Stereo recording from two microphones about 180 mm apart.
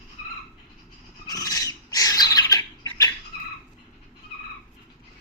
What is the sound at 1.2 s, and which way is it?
Bird, 20° left (ahead or behind).